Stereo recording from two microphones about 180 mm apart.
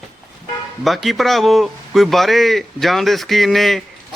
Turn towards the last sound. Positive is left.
turn(degrees=0)  # may be behind; listen again after turning